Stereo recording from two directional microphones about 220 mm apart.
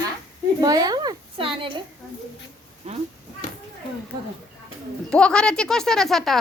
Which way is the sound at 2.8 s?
30° right (ahead or behind).